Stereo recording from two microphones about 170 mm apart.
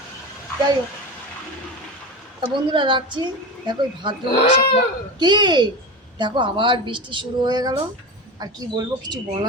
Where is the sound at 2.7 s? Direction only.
30° right (ahead or behind).